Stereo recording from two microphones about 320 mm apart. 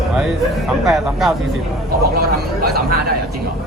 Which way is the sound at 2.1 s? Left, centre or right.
Right.